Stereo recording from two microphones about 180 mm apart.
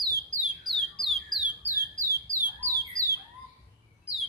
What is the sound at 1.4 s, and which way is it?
Bird, 15° right (ahead or behind).